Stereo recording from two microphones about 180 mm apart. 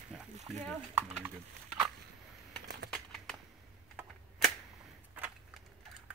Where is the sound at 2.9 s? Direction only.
5° left (ahead or behind).